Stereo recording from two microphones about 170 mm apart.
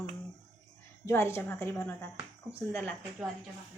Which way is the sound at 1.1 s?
15° left (ahead or behind).